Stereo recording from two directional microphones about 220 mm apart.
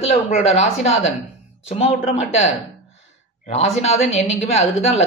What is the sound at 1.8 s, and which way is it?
Speech, 30° left (ahead or behind).